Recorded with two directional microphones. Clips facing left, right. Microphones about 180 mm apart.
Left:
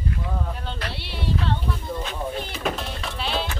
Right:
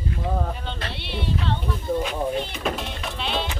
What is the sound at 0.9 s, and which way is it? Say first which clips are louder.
Speech: right 2 dB; 5° left (ahead or behind).